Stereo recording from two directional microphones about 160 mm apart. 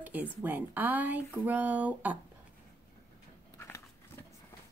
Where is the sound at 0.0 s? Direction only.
10° right (ahead or behind).